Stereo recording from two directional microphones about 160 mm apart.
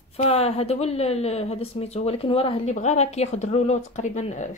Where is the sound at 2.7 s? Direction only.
45° left (ahead or behind).